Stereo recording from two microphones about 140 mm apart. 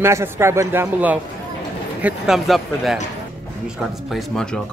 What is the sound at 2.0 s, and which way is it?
Speech, centre (ahead or behind).